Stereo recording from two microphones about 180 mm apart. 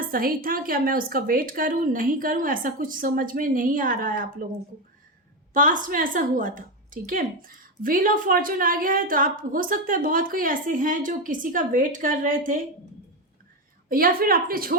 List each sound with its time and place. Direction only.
0.1 s a woman's voice: 55° right (ahead or behind)
5.5 s a woman's voice: 50° right (ahead or behind)
13.9 s a woman's voice: 55° right (ahead or behind)